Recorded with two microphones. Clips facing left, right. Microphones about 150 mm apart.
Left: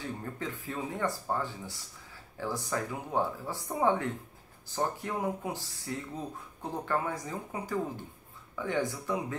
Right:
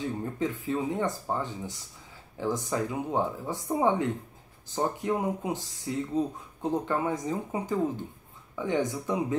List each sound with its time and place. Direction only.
0.0 s speech: 20° right (ahead or behind)